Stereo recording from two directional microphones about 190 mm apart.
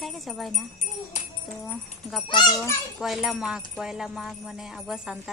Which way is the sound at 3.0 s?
Centre (ahead or behind).